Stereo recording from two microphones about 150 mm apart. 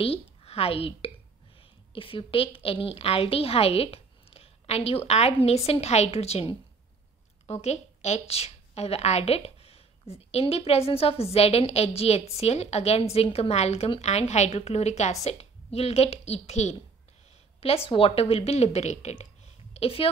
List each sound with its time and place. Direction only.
0.0 s a woman's voice: 40° left (ahead or behind)
17.8 s a woman's voice: 40° left (ahead or behind)